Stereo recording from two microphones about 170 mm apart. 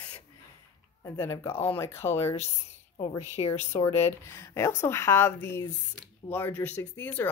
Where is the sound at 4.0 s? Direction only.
15° left (ahead or behind).